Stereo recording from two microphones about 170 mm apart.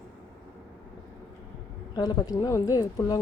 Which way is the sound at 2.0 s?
25° left (ahead or behind).